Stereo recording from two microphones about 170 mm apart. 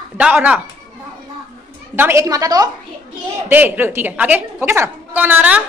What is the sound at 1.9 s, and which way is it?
Speech, 15° right (ahead or behind).